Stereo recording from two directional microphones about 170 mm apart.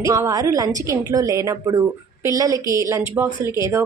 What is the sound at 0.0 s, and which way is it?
A woman's voice, 15° right (ahead or behind).